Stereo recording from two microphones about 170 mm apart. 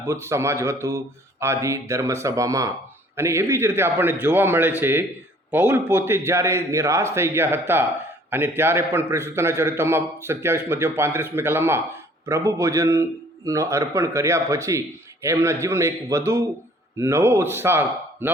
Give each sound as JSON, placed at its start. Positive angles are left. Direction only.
{"t": 0.0, "sound": "a man's voice", "side_deg": -15}